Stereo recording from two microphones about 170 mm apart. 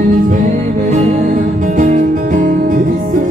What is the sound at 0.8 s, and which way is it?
Music, 45° right (ahead or behind).